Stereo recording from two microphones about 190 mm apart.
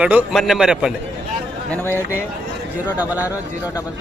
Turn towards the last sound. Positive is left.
turn(degrees=-10)  # may be behind; listen again after turning